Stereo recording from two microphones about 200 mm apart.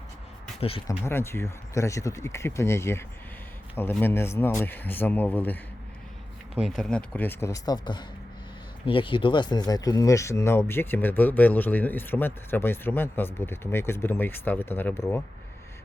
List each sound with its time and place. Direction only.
0.9 s speech: 15° left (ahead or behind)
6.5 s speech: centre (ahead or behind)